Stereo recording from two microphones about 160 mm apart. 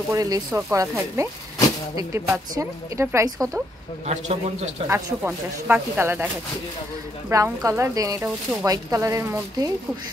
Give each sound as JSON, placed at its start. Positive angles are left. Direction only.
{"t": 0.1, "sound": "speech", "side_deg": -20}
{"t": 0.5, "sound": "speech", "side_deg": -5}
{"t": 0.7, "sound": "speech", "side_deg": -15}
{"t": 4.0, "sound": "a man's voice", "side_deg": -45}
{"t": 4.8, "sound": "speech", "side_deg": -15}
{"t": 7.2, "sound": "speech", "side_deg": -20}